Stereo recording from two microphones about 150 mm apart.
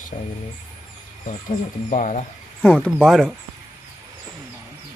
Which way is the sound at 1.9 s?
55° left (ahead or behind).